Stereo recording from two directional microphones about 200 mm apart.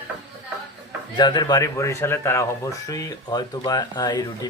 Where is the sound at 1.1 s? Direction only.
20° left (ahead or behind).